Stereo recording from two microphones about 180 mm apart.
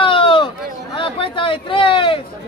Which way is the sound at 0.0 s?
30° left (ahead or behind).